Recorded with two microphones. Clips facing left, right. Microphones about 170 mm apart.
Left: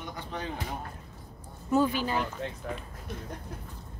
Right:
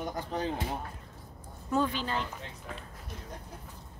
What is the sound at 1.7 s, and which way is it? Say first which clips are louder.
Speech: left 4 dB; 5° left (ahead or behind).